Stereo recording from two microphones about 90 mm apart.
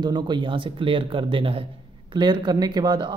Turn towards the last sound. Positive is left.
turn(degrees=-50)  # may be behind; listen again after turning